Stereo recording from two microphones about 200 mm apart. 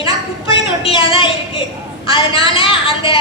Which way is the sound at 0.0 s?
25° left (ahead or behind).